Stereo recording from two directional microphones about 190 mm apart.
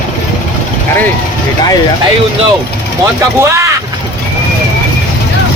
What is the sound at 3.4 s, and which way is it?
Speech, 15° right (ahead or behind).